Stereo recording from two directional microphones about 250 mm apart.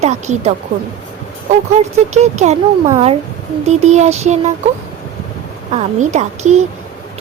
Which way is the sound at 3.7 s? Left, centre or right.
Right.